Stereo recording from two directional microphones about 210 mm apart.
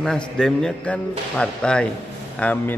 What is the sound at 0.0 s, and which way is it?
Speech, centre (ahead or behind).